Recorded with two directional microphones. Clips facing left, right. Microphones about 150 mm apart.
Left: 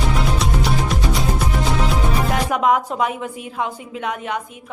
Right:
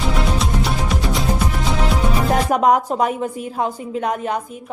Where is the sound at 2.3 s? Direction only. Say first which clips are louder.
Right 3 dB; 40° right (ahead or behind).